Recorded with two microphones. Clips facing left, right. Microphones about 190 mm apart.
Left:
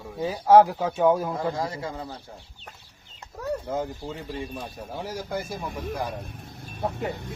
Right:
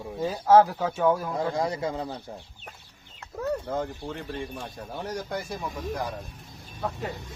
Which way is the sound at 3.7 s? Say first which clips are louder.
Left 1 dB; 10° left (ahead or behind).